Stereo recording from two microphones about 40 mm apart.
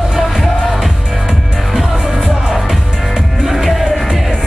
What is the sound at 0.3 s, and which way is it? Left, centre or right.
Music, centre.